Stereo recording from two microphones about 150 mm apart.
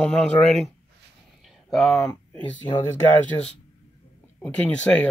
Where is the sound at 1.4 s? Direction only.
Centre (ahead or behind).